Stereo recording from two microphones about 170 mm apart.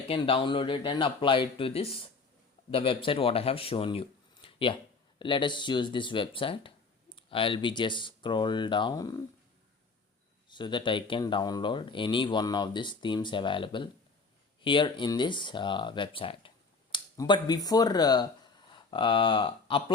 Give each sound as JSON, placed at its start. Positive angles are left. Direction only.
{"t": 0.1, "sound": "speech", "side_deg": 30}
{"t": 10.5, "sound": "speech", "side_deg": 25}